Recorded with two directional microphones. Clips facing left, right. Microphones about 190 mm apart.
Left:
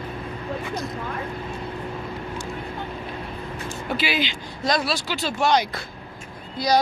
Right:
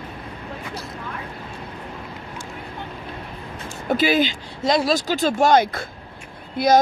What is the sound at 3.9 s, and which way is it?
Speech, 45° right (ahead or behind).